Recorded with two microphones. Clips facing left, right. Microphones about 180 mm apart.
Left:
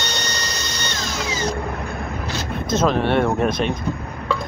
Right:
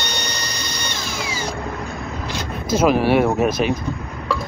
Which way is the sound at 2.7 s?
5° right (ahead or behind).